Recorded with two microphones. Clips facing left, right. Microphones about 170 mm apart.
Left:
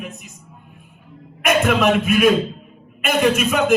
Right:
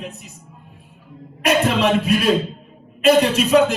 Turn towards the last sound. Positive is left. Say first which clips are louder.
# right 3 dB
turn(degrees=-35)  # may be behind; listen again after turning